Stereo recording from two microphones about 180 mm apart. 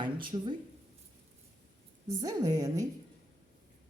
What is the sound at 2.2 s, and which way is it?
Speech, 20° right (ahead or behind).